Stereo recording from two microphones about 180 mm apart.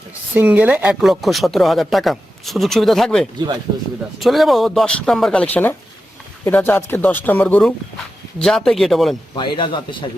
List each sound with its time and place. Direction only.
0.3 s speech: 10° right (ahead or behind)
9.3 s a man's voice: 25° left (ahead or behind)